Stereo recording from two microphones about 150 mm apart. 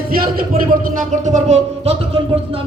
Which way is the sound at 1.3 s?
45° right (ahead or behind).